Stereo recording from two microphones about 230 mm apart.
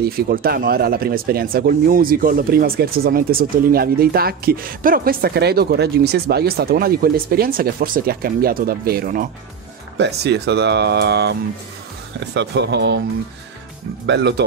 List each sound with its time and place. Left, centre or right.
0.0 s speech: right
12.4 s speech: right
14.0 s speech: right